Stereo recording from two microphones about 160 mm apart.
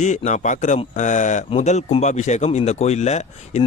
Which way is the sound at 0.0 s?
50° left (ahead or behind).